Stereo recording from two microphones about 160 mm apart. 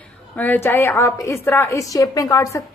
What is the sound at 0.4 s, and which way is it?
A woman's voice, 15° left (ahead or behind).